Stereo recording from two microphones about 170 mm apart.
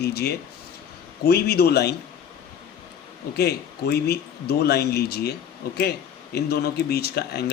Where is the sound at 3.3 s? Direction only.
70° left (ahead or behind).